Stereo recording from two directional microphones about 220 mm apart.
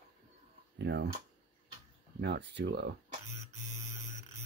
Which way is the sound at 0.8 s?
50° right (ahead or behind).